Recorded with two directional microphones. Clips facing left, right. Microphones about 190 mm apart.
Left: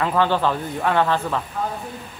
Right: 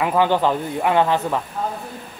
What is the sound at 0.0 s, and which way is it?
Speech, 15° right (ahead or behind).